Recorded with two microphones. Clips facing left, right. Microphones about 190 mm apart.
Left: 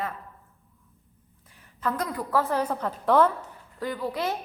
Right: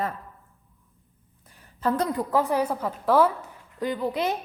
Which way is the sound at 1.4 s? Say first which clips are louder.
Right 4 dB; 30° right (ahead or behind).